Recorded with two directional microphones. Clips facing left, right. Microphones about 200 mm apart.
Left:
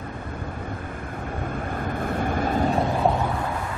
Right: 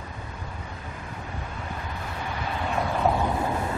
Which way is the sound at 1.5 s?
50° left (ahead or behind).